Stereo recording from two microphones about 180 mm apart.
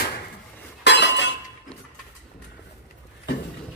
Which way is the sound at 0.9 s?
85° left.